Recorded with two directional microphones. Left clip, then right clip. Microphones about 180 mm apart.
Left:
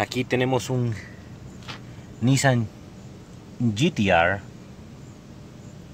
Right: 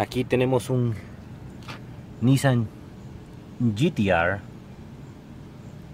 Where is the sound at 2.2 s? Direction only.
5° left (ahead or behind).